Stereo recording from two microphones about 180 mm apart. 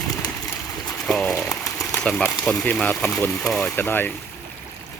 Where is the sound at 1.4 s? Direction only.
20° left (ahead or behind).